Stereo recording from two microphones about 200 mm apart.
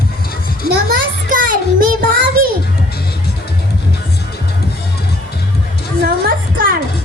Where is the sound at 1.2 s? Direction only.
40° right (ahead or behind).